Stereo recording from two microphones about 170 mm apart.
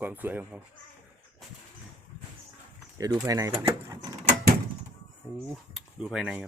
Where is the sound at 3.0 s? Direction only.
20° right (ahead or behind).